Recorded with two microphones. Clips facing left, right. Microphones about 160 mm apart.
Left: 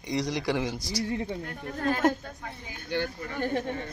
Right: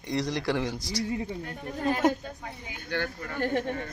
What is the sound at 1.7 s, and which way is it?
Speech, 15° right (ahead or behind).